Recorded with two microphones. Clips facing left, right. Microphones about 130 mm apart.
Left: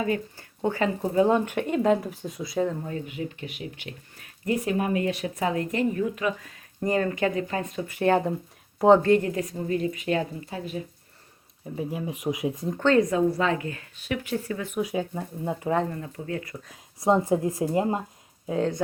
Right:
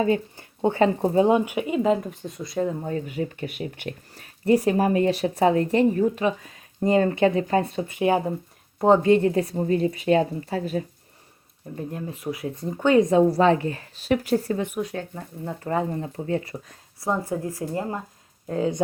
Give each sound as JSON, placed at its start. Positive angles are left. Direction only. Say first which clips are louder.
{"t": 0.0, "sound": "speech", "louder": "right 5 dB", "side_deg": -25}
{"t": 1.3, "sound": "speech", "louder": "right 2 dB", "side_deg": -10}
{"t": 2.8, "sound": "speech", "louder": "right 5 dB", "side_deg": -35}
{"t": 4.1, "sound": "speech", "louder": "right 8 dB", "side_deg": -35}
{"t": 9.0, "sound": "speech", "louder": "right 3 dB", "side_deg": -20}
{"t": 11.7, "sound": "speech", "louder": "left 1 dB", "side_deg": 5}
{"t": 12.6, "sound": "speech", "louder": "right 3 dB", "side_deg": -10}
{"t": 13.1, "sound": "speech", "louder": "right 6 dB", "side_deg": -30}
{"t": 14.8, "sound": "speech", "louder": "left 2 dB", "side_deg": 10}
{"t": 15.9, "sound": "speech", "louder": "right 6 dB", "side_deg": -30}
{"t": 17.0, "sound": "speech", "louder": "left 4 dB", "side_deg": 20}
{"t": 18.4, "sound": "speech", "louder": "right 1 dB", "side_deg": 0}